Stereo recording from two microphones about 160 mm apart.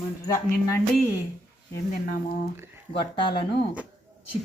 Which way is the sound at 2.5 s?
15° right (ahead or behind).